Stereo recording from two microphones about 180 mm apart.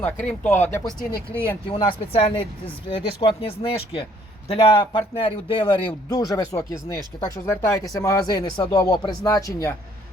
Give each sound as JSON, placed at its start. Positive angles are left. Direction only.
{"t": 0.0, "sound": "speech", "side_deg": 10}
{"t": 1.6, "sound": "speech", "side_deg": 30}